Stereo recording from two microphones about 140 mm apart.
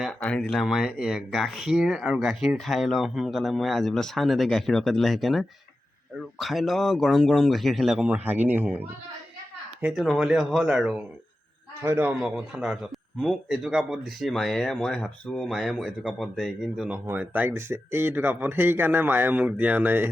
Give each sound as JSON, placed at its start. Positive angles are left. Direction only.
{"t": 0.0, "sound": "speech", "side_deg": 5}
{"t": 9.8, "sound": "speech", "side_deg": 0}
{"t": 11.8, "sound": "speech", "side_deg": -15}
{"t": 16.9, "sound": "speech", "side_deg": -10}